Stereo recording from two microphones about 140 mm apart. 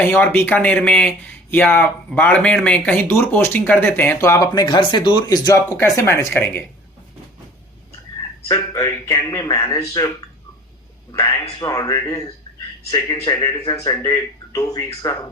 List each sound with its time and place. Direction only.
0.0 s speech: 15° left (ahead or behind); by 5.4 s 35° left (ahead or behind)
5.7 s speech: 20° left (ahead or behind)
8.4 s speech: 25° left (ahead or behind)
11.6 s speech: 25° left (ahead or behind)
12.5 s a sound: 25° left (ahead or behind)
12.9 s speech: 25° left (ahead or behind)